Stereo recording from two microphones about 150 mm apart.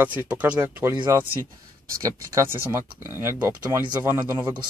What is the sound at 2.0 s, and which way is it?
Speech, 20° right (ahead or behind).